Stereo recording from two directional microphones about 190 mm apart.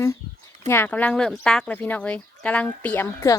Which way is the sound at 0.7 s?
10° left (ahead or behind).